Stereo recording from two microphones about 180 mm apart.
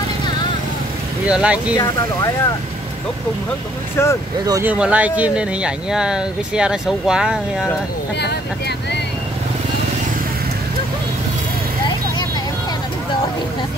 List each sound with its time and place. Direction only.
1.2 s speech: 5° right (ahead or behind)
1.8 s speech: 20° left (ahead or behind)
4.0 s speech: 15° left (ahead or behind)
4.5 s speech: 15° right (ahead or behind)
8.2 s speech: 65° left (ahead or behind)